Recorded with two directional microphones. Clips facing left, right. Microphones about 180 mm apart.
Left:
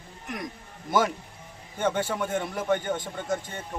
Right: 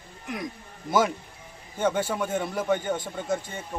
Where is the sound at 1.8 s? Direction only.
10° right (ahead or behind).